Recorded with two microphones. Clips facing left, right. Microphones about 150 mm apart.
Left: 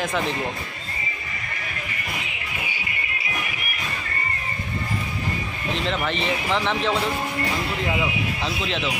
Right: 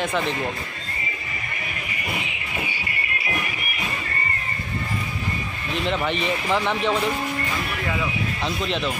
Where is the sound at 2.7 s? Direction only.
20° left (ahead or behind).